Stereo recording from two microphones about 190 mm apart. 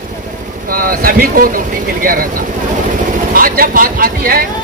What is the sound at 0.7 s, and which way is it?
Speech, 50° right (ahead or behind).